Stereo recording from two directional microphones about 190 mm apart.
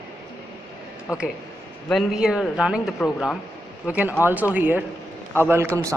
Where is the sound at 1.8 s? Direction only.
Centre (ahead or behind).